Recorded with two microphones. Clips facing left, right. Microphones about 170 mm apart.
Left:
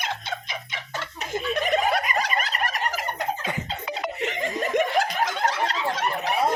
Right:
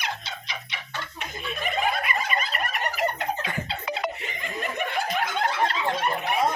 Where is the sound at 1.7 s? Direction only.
80° left.